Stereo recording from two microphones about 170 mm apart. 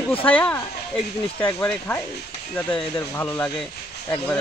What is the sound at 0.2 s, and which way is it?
Speech, 10° left (ahead or behind).